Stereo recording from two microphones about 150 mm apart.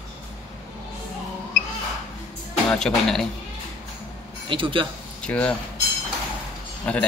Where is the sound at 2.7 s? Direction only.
5° left (ahead or behind).